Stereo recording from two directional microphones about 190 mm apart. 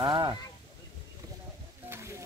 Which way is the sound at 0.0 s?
25° right (ahead or behind).